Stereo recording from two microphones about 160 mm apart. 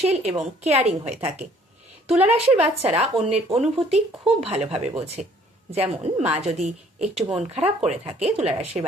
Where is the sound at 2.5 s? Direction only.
40° right (ahead or behind).